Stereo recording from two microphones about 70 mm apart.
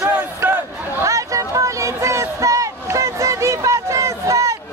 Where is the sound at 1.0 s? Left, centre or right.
Right.